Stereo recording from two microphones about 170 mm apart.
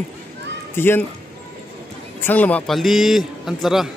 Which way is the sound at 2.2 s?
10° left (ahead or behind).